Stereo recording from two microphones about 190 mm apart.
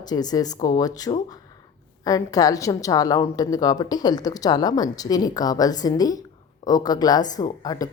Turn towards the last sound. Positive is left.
turn(degrees=20)  # may be behind; listen again after turning